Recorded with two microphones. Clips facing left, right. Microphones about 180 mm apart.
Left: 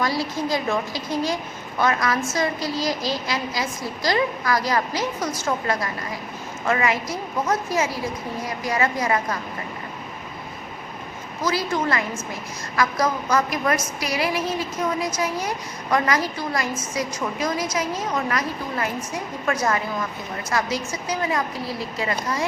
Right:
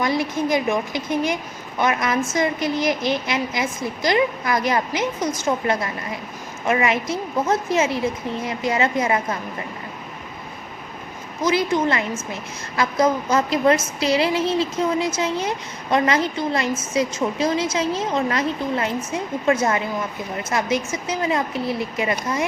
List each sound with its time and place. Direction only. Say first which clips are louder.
0.0 s a woman's voice: right 3 dB; 20° right (ahead or behind)
11.4 s a woman's voice: right 4 dB; 20° right (ahead or behind)